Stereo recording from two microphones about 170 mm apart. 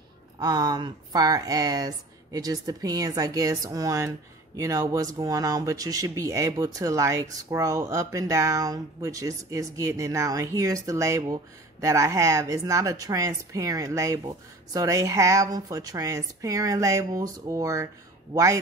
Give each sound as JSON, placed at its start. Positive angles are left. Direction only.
{"t": 0.4, "sound": "speech", "side_deg": -25}